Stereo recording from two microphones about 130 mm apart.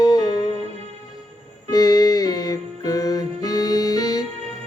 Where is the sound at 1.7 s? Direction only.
30° left (ahead or behind).